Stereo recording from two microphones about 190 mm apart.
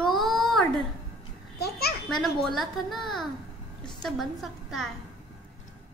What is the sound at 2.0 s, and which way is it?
A woman's voice, centre (ahead or behind).